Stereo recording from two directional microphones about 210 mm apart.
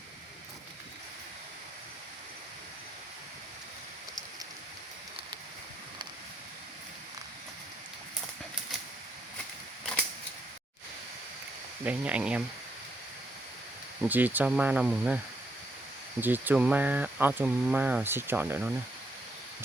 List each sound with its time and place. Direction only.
11.9 s speech: 5° right (ahead or behind)
14.1 s speech: 10° right (ahead or behind)
16.2 s speech: 10° right (ahead or behind)